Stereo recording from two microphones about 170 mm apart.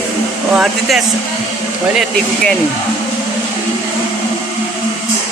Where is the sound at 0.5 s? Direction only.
5° right (ahead or behind).